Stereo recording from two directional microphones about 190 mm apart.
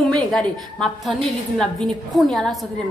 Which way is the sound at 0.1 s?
5° left (ahead or behind).